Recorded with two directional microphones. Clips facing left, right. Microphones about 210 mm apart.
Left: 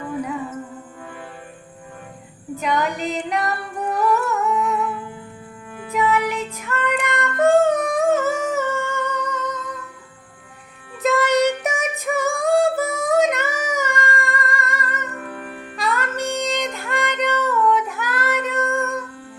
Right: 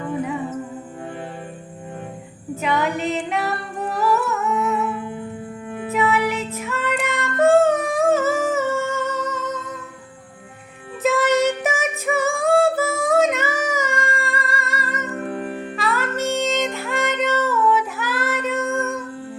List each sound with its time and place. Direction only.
2.6 s music: 5° right (ahead or behind)
4.5 s humming: 25° right (ahead or behind)
5.9 s music: 5° right (ahead or behind)
11.0 s music: centre (ahead or behind)
15.1 s music: 30° right (ahead or behind)
15.8 s music: centre (ahead or behind)